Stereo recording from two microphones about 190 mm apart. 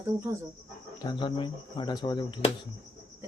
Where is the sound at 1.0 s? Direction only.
25° left (ahead or behind).